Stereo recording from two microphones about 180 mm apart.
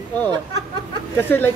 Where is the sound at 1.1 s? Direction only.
10° left (ahead or behind).